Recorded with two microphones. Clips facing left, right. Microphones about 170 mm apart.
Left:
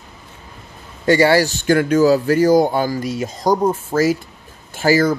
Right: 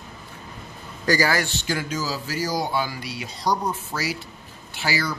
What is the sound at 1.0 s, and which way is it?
Speech, 25° left (ahead or behind).